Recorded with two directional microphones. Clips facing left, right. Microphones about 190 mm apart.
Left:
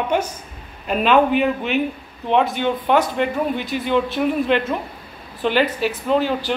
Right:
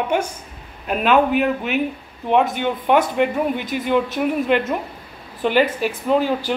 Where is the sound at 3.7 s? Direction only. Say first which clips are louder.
Even; 50° right (ahead or behind).